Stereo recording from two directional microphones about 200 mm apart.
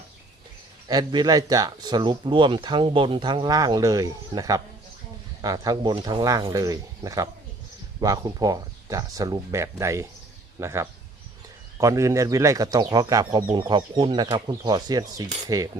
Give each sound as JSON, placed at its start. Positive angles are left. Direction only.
{"t": 0.9, "sound": "speech", "side_deg": -20}